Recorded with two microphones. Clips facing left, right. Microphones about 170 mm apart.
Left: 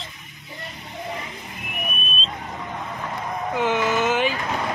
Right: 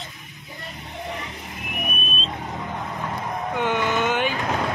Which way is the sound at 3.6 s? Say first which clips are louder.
Left 2 dB; 5° left (ahead or behind).